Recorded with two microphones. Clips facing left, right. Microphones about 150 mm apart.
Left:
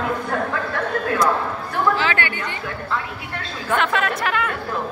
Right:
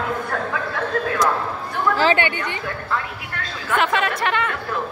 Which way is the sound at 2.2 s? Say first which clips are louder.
Right 3 dB; 20° right (ahead or behind).